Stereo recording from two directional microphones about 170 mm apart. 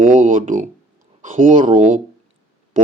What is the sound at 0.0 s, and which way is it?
Speech, 50° right (ahead or behind).